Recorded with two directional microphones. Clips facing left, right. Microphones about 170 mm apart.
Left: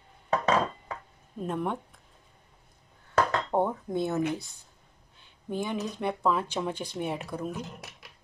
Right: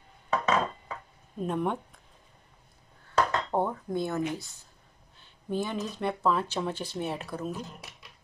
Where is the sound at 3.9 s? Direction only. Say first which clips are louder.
Left 2 dB; 20° left (ahead or behind).